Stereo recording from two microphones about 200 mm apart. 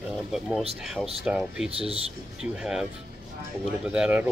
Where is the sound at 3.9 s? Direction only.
5° right (ahead or behind).